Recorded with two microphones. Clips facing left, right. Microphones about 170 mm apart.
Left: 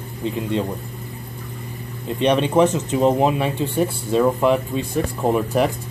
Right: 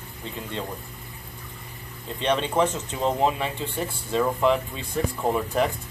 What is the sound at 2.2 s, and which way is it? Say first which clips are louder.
Speech: left 7 dB; 15° left (ahead or behind).